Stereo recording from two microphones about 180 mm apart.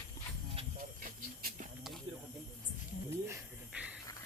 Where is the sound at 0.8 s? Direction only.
45° right (ahead or behind).